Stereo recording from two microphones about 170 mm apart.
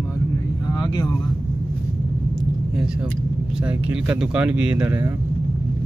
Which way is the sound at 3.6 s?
5° right (ahead or behind).